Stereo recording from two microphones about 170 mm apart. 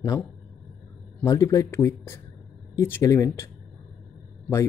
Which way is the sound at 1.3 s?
20° left (ahead or behind).